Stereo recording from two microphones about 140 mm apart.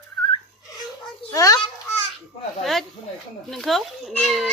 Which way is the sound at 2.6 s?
Centre (ahead or behind).